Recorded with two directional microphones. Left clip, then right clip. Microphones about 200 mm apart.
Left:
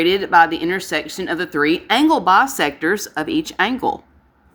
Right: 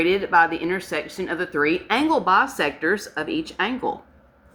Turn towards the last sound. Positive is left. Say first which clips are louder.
# left 6 dB
turn(degrees=50)  # may be behind; listen again after turning